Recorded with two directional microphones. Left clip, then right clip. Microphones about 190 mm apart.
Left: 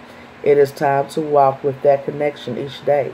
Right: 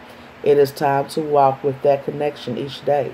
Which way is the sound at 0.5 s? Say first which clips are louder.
Left 1 dB; centre (ahead or behind).